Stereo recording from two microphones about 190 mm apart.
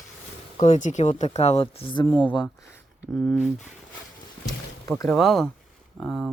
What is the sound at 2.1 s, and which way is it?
Speech, 10° left (ahead or behind).